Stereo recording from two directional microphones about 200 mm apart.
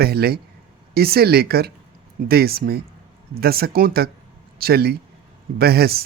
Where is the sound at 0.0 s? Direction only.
50° right (ahead or behind).